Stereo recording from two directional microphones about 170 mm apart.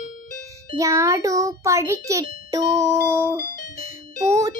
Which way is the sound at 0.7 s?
20° right (ahead or behind).